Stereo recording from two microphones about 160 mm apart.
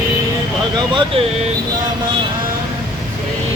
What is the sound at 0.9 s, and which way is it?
Speech, 35° right (ahead or behind).